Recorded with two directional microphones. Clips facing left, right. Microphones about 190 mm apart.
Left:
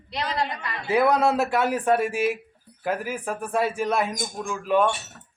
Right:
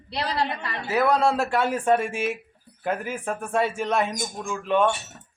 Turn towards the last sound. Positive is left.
turn(degrees=5)  # may be behind; listen again after turning